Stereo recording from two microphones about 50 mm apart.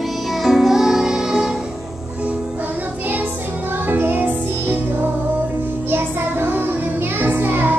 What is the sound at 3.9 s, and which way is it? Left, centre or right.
Music, right.